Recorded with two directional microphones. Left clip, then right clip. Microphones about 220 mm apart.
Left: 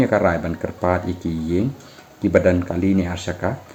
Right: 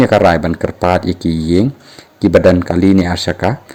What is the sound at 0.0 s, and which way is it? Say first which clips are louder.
Speech: right 8 dB; 40° right (ahead or behind).